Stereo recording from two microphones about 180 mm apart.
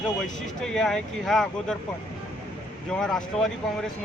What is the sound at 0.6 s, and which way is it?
Speech, 5° left (ahead or behind).